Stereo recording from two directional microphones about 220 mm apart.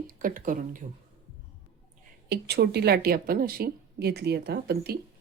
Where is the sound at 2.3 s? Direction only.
45° right (ahead or behind).